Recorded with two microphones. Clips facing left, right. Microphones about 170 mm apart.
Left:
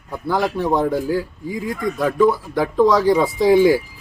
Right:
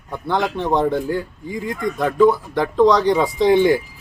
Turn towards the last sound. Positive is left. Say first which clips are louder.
# left 1 dB
turn(degrees=5)  # may be behind; listen again after turning